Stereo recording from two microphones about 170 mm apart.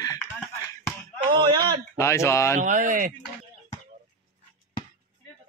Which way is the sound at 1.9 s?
15° left (ahead or behind).